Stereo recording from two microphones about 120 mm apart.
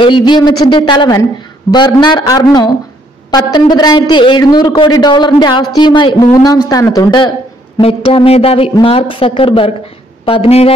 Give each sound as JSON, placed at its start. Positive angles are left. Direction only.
{"t": 0.0, "sound": "a man's voice", "side_deg": 40}
{"t": 7.8, "sound": "speech", "side_deg": 50}